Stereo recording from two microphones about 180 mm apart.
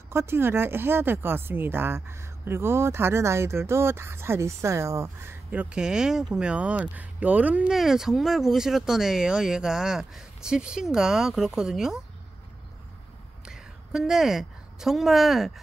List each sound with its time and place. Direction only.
0.1 s speech: 15° right (ahead or behind)
13.5 s a woman's voice: 5° right (ahead or behind)